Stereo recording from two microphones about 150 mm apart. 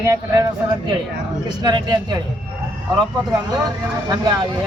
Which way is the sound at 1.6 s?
30° right (ahead or behind).